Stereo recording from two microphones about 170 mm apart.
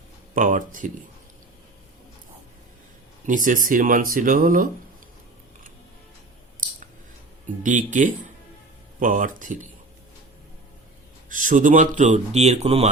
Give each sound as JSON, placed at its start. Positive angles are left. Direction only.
{"t": 0.3, "sound": "speech", "side_deg": -50}
{"t": 3.2, "sound": "speech", "side_deg": -50}
{"t": 7.4, "sound": "speech", "side_deg": -50}
{"t": 11.3, "sound": "speech", "side_deg": -50}